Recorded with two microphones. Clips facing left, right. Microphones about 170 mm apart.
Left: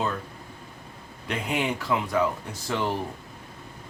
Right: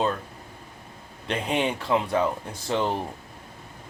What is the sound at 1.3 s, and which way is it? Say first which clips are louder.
Speech: right 2 dB; 30° right (ahead or behind).